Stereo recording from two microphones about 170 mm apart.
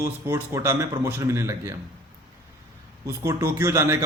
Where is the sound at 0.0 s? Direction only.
15° right (ahead or behind).